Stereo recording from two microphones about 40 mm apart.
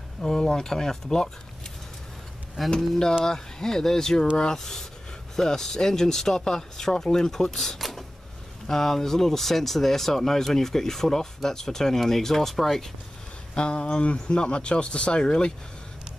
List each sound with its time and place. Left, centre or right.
0.2 s speech: centre
2.6 s speech: centre
3.3 s speech: centre
13.6 s speech: left